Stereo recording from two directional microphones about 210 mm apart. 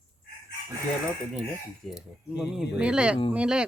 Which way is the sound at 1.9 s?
Centre (ahead or behind).